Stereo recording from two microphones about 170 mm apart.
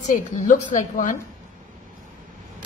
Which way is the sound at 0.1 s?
50° left (ahead or behind).